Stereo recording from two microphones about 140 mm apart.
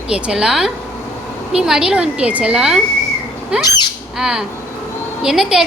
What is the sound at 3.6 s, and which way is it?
Bird, 30° left (ahead or behind).